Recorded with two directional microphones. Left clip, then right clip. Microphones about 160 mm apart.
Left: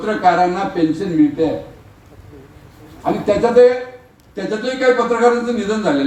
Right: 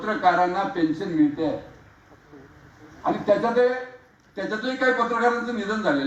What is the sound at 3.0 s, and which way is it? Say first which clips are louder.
A man's voice: left 5 dB; 25° left (ahead or behind).